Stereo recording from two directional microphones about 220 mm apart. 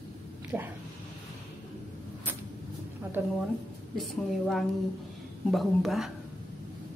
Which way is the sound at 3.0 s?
15° right (ahead or behind).